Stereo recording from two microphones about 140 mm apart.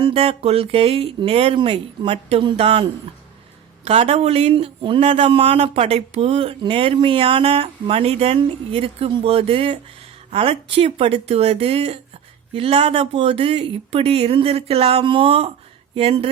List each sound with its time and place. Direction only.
0.0 s speech: 45° right (ahead or behind)
3.8 s speech: 45° right (ahead or behind)